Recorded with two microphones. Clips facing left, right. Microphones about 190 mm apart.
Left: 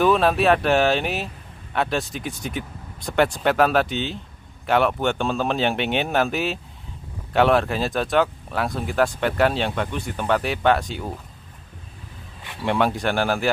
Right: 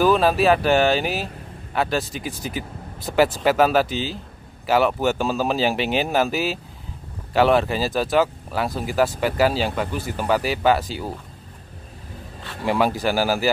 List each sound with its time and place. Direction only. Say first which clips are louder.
0.0 s speech: right 1 dB; centre (ahead or behind)
12.6 s speech: right 1 dB; centre (ahead or behind)